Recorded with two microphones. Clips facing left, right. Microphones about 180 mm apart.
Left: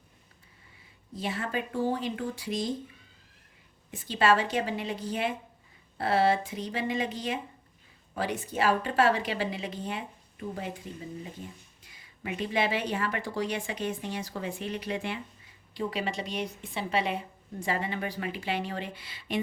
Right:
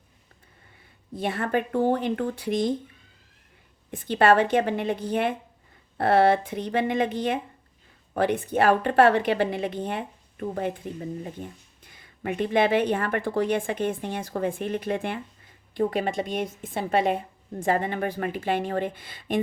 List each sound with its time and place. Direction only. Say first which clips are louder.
1.1 s a woman's voice: right 6 dB; 55° right (ahead or behind)
3.9 s a woman's voice: right 6 dB; 55° right (ahead or behind)
11.8 s a woman's voice: right 8 dB; 55° right (ahead or behind)